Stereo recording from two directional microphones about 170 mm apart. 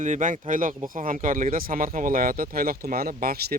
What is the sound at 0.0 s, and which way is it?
Speech, 50° right (ahead or behind).